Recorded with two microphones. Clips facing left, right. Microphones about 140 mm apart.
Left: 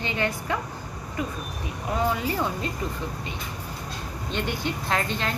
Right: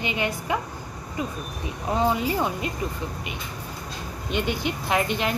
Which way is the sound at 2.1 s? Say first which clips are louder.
Right 2 dB; 20° right (ahead or behind).